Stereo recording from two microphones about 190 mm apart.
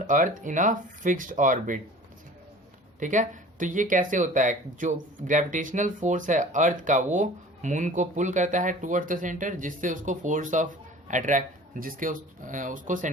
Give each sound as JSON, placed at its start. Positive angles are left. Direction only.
{"t": 0.1, "sound": "speech", "side_deg": -45}
{"t": 3.0, "sound": "speech", "side_deg": -40}